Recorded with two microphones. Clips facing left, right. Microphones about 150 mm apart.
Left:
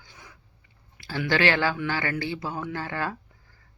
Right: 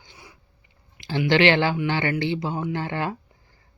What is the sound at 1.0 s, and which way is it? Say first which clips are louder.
Speech: right 5 dB; 20° right (ahead or behind).